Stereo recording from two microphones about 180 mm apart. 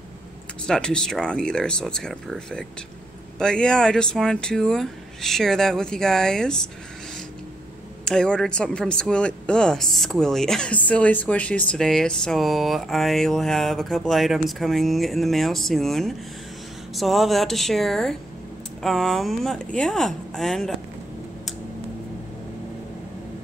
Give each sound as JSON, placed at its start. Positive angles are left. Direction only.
{"t": 0.7, "sound": "a woman's voice", "side_deg": 5}
{"t": 8.0, "sound": "a woman's voice", "side_deg": 5}